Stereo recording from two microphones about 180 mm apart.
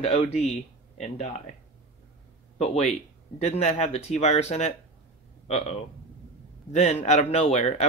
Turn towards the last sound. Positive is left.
turn(degrees=40)  # may be behind; listen again after turning